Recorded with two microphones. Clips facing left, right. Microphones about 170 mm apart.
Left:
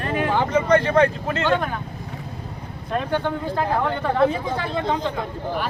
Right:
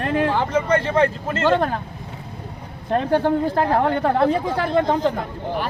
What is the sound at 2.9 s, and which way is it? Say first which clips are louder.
Speech: right 5 dB; 40° right (ahead or behind).